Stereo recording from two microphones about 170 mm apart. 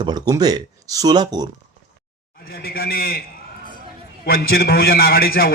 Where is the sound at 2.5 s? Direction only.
65° left (ahead or behind).